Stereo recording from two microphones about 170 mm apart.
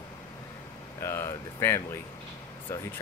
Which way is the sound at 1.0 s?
15° left (ahead or behind).